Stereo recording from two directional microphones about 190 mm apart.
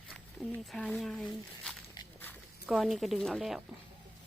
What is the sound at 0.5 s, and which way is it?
Speech, centre (ahead or behind).